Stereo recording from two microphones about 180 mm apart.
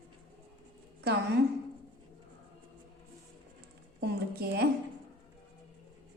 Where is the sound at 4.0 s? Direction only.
60° right (ahead or behind).